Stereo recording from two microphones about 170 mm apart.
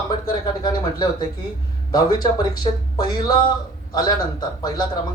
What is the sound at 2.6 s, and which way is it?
Speech, 25° left (ahead or behind).